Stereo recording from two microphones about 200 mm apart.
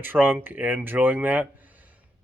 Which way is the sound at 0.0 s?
10° right (ahead or behind).